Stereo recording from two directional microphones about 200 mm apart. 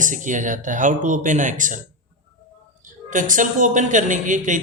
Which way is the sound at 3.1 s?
40° right (ahead or behind).